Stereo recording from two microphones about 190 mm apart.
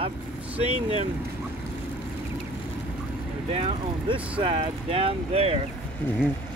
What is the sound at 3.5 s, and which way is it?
Speech, 30° right (ahead or behind).